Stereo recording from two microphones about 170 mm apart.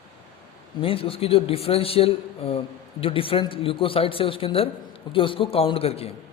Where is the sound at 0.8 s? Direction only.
35° left (ahead or behind).